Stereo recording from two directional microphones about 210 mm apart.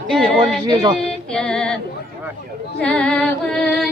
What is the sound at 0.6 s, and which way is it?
Female singing, 20° right (ahead or behind).